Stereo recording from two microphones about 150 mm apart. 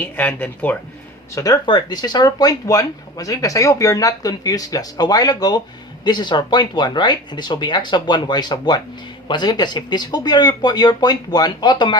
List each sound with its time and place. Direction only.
0.0 s speech: 10° left (ahead or behind)
1.4 s speech: 30° left (ahead or behind)